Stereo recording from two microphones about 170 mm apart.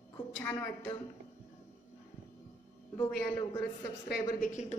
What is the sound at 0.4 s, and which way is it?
Speech, 15° left (ahead or behind).